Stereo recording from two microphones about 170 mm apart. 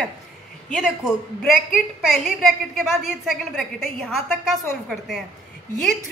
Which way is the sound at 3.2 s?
Centre (ahead or behind).